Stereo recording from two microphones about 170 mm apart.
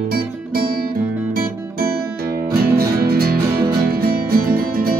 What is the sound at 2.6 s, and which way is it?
Music, 65° right (ahead or behind).